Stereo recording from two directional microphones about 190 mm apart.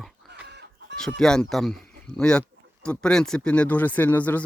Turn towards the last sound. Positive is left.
turn(degrees=10)  # may be behind; listen again after turning